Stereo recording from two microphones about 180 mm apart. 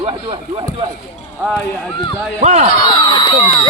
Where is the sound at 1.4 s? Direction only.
5° right (ahead or behind).